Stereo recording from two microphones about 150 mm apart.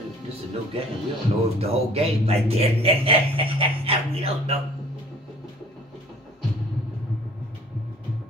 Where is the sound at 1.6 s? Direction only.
40° right (ahead or behind).